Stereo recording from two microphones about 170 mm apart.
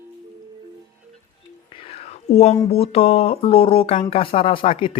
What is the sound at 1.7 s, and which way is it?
Whispering, 35° left (ahead or behind).